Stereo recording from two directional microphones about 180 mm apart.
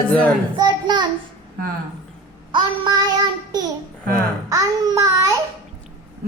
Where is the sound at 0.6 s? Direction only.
25° right (ahead or behind).